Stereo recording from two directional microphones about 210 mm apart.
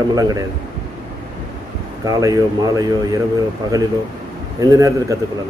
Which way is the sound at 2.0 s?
15° right (ahead or behind).